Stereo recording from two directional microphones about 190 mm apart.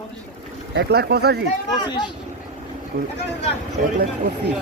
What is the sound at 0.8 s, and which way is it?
Speech, 60° right (ahead or behind).